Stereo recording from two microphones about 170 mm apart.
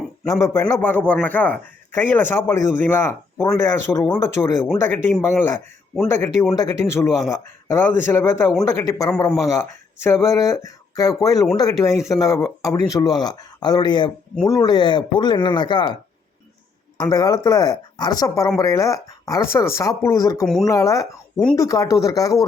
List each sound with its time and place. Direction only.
0.3 s a man's voice: 20° left (ahead or behind)
17.0 s speech: 25° left (ahead or behind)